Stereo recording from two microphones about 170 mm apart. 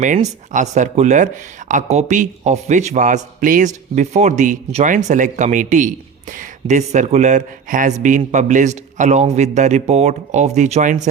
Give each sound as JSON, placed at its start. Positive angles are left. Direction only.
{"t": 0.0, "sound": "speech", "side_deg": -50}